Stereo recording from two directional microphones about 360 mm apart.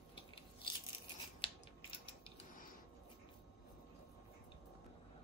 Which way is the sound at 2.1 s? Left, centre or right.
Centre.